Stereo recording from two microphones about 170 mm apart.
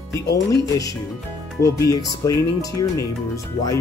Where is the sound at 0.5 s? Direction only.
20° left (ahead or behind).